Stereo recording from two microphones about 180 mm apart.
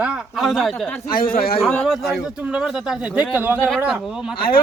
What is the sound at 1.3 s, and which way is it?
Speech, 55° left (ahead or behind).